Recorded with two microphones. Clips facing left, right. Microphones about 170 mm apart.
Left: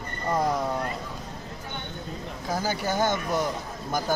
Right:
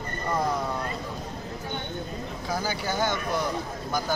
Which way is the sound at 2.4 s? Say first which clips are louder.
Left 2 dB; 45° left (ahead or behind).